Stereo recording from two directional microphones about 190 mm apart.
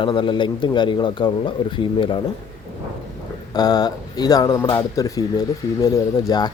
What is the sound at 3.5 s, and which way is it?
Speech, 20° left (ahead or behind).